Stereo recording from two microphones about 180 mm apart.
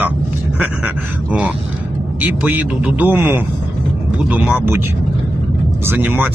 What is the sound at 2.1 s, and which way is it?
Speech, 10° right (ahead or behind).